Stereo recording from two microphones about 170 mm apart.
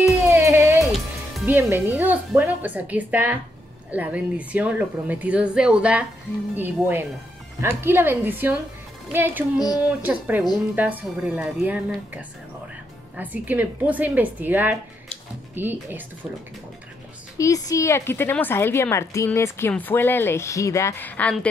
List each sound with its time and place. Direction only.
0.3 s a sound: 15° right (ahead or behind)
1.4 s a woman's voice: 10° right (ahead or behind)
17.4 s speech: 20° left (ahead or behind)